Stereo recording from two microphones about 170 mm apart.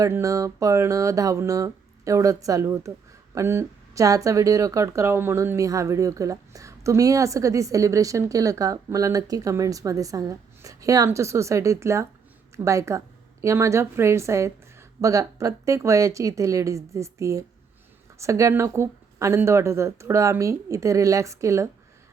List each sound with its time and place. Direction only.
0.0 s a woman's voice: 20° right (ahead or behind)